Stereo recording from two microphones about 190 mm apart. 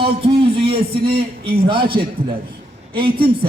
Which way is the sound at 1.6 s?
25° right (ahead or behind).